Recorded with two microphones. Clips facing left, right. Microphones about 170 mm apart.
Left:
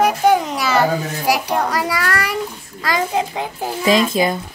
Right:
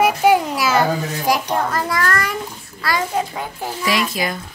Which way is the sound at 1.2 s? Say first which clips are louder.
Even; 10° left (ahead or behind).